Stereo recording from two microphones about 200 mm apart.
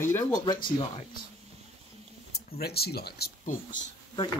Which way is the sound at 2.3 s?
50° left (ahead or behind).